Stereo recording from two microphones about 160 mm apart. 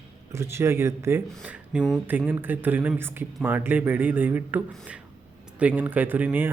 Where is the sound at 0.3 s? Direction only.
15° right (ahead or behind).